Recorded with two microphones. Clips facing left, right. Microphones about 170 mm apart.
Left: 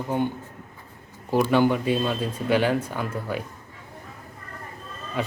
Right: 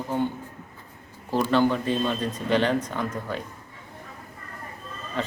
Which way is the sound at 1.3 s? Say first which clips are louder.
Left 2 dB; 15° left (ahead or behind).